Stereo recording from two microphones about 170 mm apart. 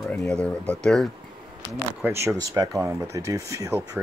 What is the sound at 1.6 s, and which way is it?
Speech, 10° right (ahead or behind).